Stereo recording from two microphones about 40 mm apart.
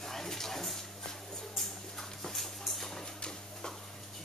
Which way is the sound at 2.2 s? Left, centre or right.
Centre.